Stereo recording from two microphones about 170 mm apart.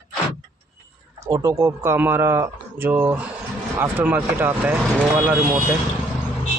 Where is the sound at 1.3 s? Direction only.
15° right (ahead or behind).